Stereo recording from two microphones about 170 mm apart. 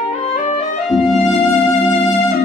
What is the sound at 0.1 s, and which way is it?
Music, 40° left (ahead or behind).